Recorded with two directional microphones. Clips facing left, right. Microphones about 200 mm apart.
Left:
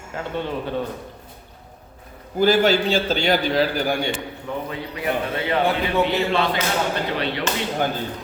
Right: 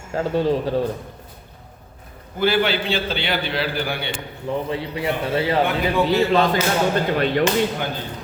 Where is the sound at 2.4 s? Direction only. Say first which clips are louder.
Left 3 dB; 40° left (ahead or behind).